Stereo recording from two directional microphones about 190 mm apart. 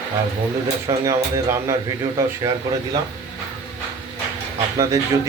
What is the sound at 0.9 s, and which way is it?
Speech, 15° right (ahead or behind).